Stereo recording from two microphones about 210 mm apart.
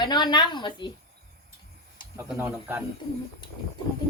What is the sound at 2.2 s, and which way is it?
Speech, 10° right (ahead or behind).